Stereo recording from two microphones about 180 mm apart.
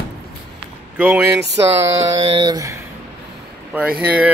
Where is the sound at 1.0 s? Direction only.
15° right (ahead or behind).